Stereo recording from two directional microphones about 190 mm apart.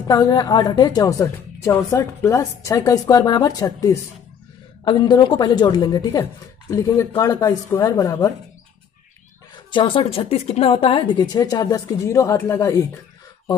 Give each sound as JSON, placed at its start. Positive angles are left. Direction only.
{"t": 0.1, "sound": "a woman's voice", "side_deg": 20}
{"t": 9.7, "sound": "a woman's voice", "side_deg": 25}